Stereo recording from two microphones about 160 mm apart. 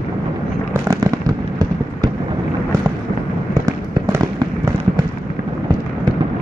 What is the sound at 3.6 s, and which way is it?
Fireworks, 20° right (ahead or behind).